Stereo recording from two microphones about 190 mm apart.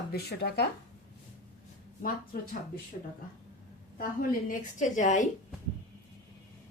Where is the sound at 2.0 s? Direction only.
50° left (ahead or behind).